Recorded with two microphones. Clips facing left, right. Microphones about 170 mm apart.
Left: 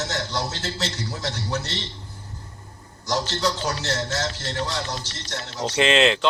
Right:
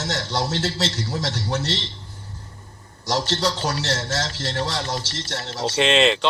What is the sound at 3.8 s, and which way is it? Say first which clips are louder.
Speech: right 1 dB; 20° left (ahead or behind).